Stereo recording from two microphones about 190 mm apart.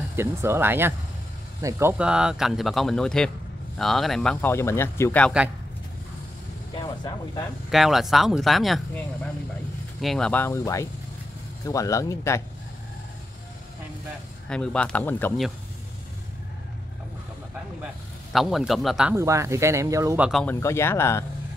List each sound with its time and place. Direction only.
0.1 s speech: 15° right (ahead or behind); by 5.3 s 10° left (ahead or behind)
6.7 s speech: 25° left (ahead or behind)
7.7 s speech: centre (ahead or behind); by 12.4 s 15° left (ahead or behind)
14.5 s speech: 5° left (ahead or behind)
18.3 s speech: centre (ahead or behind)
19.1 s speech: 15° right (ahead or behind)
20.2 s speech: centre (ahead or behind)
20.6 s speech: 15° left (ahead or behind)